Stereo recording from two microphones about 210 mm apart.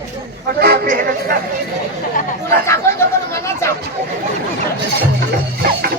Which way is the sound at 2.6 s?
10° left (ahead or behind).